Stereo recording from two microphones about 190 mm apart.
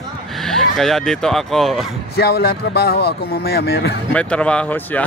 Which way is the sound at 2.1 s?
55° left (ahead or behind).